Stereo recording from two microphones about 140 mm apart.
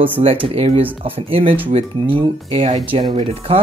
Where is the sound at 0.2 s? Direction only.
40° right (ahead or behind).